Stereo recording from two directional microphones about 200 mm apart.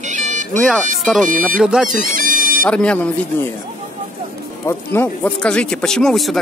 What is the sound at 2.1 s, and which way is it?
Music, 45° right (ahead or behind).